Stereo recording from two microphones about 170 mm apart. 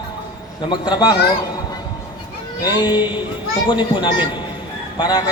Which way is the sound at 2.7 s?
25° left (ahead or behind).